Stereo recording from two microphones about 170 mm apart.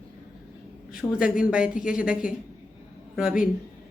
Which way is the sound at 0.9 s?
5° right (ahead or behind).